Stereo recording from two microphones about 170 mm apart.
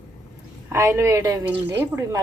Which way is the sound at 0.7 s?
15° right (ahead or behind).